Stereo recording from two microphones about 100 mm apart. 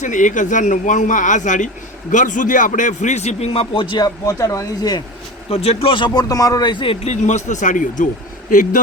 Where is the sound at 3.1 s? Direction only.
90° left; by 4.0 s 60° left (ahead or behind).